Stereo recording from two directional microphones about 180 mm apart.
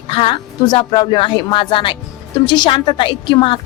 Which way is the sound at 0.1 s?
30° left (ahead or behind).